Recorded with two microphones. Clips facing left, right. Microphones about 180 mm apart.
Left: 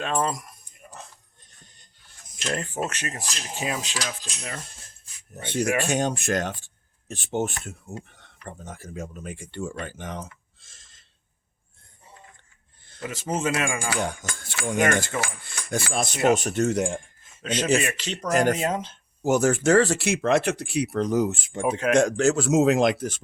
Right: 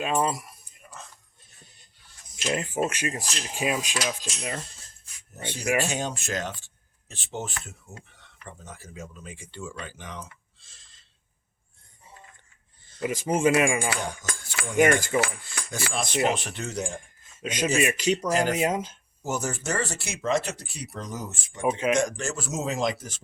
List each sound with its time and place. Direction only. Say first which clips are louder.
0.0 s speech: even; 5° right (ahead or behind)
1.4 s music: even; 10° right (ahead or behind)
2.3 s speech: right 1 dB; 5° right (ahead or behind)
5.5 s speech: left 3 dB; 50° left (ahead or behind)
13.0 s speech: right 4 dB; 15° right (ahead or behind)
14.8 s speech: right 3 dB; 10° right (ahead or behind)
15.4 s speech: left 4 dB; 50° left (ahead or behind)
17.4 s speech: left 1 dB; 10° right (ahead or behind)
18.3 s speech: left 6 dB; 50° left (ahead or behind)
18.5 s speech: right 1 dB; 10° right (ahead or behind)
19.2 s speech: left 10 dB; 70° left (ahead or behind)
21.6 s speech: left 1 dB; centre (ahead or behind)
21.9 s speech: left 7 dB; 70° left (ahead or behind)